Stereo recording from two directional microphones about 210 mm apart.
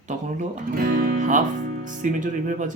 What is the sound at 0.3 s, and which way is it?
Speech, 40° right (ahead or behind).